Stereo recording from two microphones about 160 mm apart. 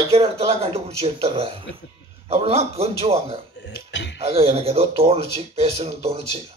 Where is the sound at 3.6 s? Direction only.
90° left.